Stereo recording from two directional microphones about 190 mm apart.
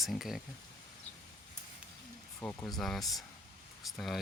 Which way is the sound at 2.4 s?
5° left (ahead or behind).